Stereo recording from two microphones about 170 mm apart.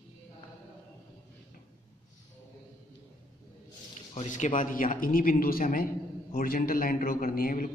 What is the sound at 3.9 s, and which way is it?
Speech, 45° left (ahead or behind).